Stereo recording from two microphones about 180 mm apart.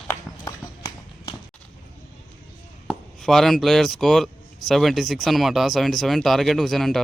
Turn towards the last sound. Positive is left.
turn(degrees=0)  # may be behind; listen again after turning